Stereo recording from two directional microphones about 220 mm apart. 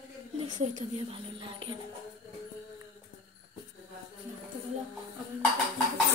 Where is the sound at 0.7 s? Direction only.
25° right (ahead or behind).